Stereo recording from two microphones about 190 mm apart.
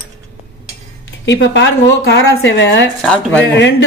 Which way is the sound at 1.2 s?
70° left (ahead or behind).